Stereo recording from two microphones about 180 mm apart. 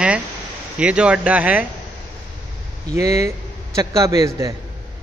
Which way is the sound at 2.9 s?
15° right (ahead or behind).